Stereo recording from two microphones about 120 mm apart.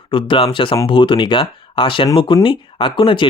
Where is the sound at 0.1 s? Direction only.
45° left (ahead or behind).